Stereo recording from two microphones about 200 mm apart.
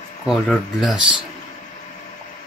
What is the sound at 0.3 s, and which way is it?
Speech, centre (ahead or behind).